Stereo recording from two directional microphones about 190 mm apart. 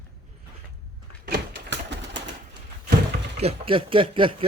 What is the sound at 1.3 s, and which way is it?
Door, 70° right (ahead or behind).